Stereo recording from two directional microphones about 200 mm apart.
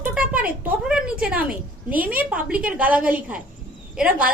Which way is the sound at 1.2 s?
5° right (ahead or behind).